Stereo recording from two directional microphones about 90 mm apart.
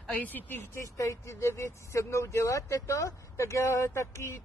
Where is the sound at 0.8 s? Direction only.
35° left (ahead or behind).